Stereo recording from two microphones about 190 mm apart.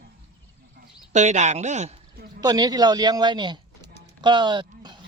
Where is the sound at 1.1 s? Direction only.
40° right (ahead or behind).